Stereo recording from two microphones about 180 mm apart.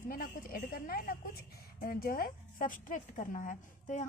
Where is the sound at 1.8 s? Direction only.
55° left (ahead or behind).